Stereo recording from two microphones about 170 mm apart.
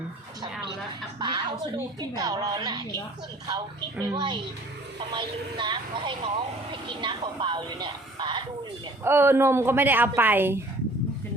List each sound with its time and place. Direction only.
1.2 s a woman's voice: 25° right (ahead or behind)
4.0 s speech: 25° right (ahead or behind)
9.0 s a woman's voice: 15° right (ahead or behind)